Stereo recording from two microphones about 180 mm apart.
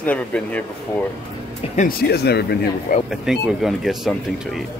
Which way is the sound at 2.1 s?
65° left (ahead or behind).